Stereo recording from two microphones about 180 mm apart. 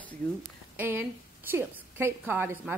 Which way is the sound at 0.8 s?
15° right (ahead or behind).